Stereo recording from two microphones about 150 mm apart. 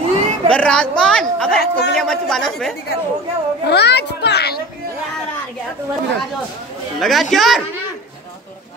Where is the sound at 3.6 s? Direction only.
90° left.